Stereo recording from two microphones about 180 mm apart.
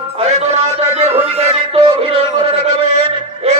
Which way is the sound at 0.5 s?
35° right (ahead or behind).